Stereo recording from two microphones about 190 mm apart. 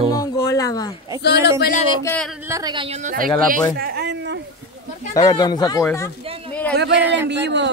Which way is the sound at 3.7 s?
55° right (ahead or behind).